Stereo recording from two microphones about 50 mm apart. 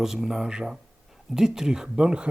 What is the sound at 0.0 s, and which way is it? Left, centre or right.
Speech, centre.